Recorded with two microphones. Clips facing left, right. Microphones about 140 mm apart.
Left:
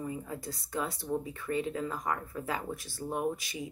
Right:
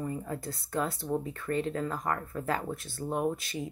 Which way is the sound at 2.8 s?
55° right (ahead or behind).